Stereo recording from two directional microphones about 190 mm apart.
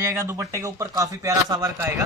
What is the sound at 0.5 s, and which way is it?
Speech, 15° right (ahead or behind).